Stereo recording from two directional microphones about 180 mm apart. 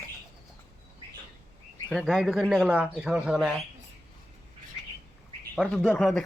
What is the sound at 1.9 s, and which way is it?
Speech, centre (ahead or behind).